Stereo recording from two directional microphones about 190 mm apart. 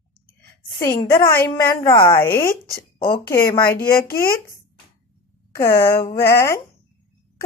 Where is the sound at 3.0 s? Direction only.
50° left (ahead or behind).